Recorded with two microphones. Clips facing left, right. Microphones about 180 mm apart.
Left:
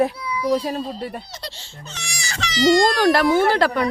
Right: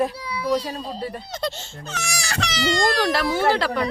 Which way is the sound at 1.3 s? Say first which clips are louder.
Right 8 dB; 55° right (ahead or behind).